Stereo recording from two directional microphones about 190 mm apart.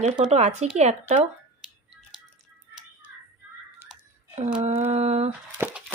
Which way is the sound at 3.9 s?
5° right (ahead or behind).